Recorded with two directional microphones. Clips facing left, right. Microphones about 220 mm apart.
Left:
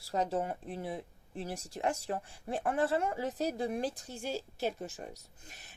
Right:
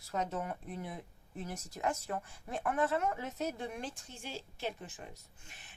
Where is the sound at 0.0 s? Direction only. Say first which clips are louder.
Left 4 dB; 30° left (ahead or behind).